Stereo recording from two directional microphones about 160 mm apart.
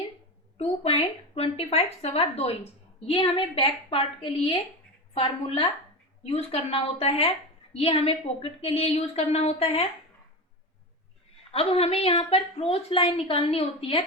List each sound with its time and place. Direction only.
0.5 s a woman's voice: 40° left (ahead or behind)
11.5 s a woman's voice: 35° left (ahead or behind)